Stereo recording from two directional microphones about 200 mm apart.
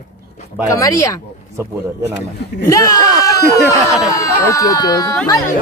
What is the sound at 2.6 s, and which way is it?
Speech, 15° left (ahead or behind).